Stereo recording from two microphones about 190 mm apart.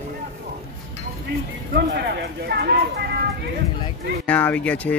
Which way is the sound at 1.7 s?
60° right (ahead or behind).